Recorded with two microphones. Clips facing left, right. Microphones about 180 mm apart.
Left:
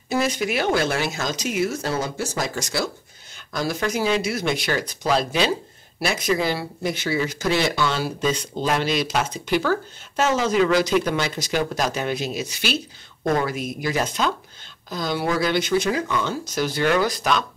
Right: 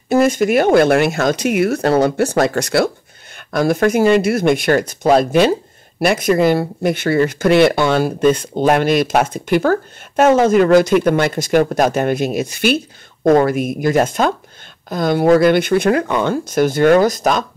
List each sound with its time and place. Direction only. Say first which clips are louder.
0.1 s speech: right 10 dB; 50° right (ahead or behind)